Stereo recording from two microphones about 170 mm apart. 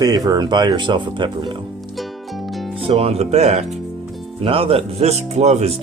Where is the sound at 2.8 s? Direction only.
35° right (ahead or behind).